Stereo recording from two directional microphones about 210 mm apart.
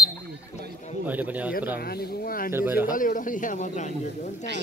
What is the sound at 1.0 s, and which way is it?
Speech, 5° right (ahead or behind).